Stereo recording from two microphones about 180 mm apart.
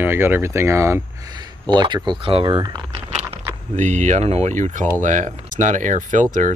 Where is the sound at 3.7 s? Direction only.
45° right (ahead or behind).